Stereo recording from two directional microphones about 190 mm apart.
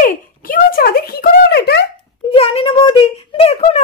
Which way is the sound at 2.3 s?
30° left (ahead or behind).